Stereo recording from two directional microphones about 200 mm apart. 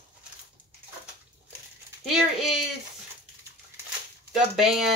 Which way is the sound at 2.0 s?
Centre (ahead or behind).